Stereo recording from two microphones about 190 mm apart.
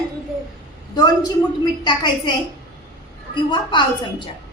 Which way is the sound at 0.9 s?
20° left (ahead or behind).